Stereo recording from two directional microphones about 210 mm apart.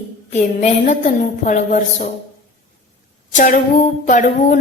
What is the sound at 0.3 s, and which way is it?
A woman's voice, 35° left (ahead or behind).